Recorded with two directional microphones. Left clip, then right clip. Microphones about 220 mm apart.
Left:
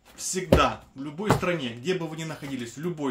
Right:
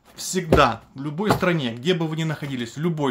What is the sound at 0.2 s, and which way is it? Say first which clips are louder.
Speech: right 4 dB; 50° right (ahead or behind).